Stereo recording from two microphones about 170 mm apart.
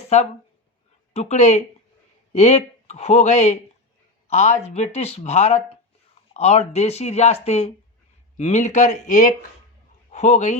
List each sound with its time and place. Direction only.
0.1 s speech: 40° left (ahead or behind)